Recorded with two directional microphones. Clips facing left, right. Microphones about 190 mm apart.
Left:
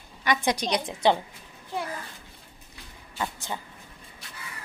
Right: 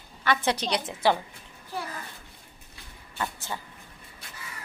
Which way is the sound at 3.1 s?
15° left (ahead or behind).